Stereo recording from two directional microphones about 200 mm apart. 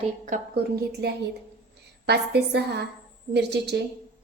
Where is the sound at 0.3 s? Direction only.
50° right (ahead or behind).